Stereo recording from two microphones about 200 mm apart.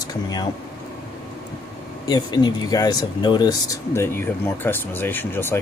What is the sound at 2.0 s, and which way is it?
Speech, 20° left (ahead or behind).